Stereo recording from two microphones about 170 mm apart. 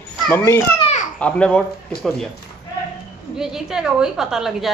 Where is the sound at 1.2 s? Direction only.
5° left (ahead or behind).